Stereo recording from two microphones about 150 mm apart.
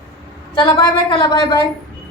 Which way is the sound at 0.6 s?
30° left (ahead or behind).